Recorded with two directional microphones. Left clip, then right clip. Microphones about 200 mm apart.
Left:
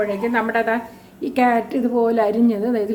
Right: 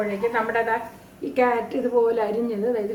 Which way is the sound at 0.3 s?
50° left (ahead or behind).